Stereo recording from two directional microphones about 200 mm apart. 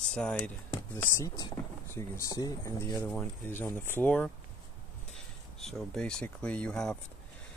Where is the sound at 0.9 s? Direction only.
15° left (ahead or behind).